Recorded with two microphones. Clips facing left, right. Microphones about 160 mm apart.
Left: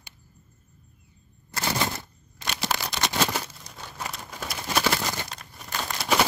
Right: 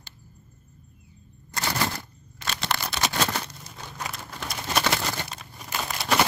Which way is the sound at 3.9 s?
5° left (ahead or behind).